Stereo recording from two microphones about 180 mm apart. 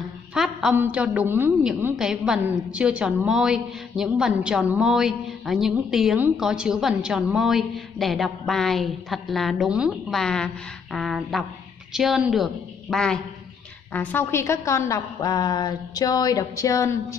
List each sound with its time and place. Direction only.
0.3 s a woman's voice: 5° right (ahead or behind); by 16.9 s 20° left (ahead or behind)